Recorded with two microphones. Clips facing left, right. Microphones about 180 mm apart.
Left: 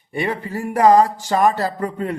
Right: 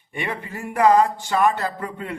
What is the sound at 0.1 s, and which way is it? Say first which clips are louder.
Speech: left 6 dB; 35° left (ahead or behind).